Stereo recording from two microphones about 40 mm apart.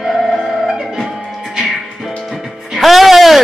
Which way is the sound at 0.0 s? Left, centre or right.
Centre.